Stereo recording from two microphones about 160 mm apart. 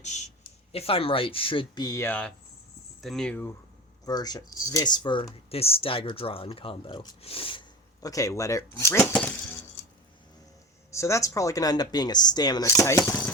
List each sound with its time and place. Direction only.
0.0 s speech: 45° left (ahead or behind); by 3.5 s 10° left (ahead or behind)
4.0 s speech: 25° left (ahead or behind)
8.0 s speech: 20° left (ahead or behind)
10.9 s speech: 20° left (ahead or behind)